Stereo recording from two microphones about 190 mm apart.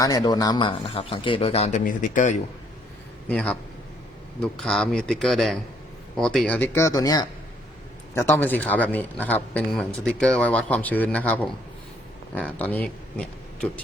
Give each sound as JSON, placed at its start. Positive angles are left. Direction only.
{"t": 0.0, "sound": "a man's voice", "side_deg": 20}
{"t": 3.2, "sound": "speech", "side_deg": 5}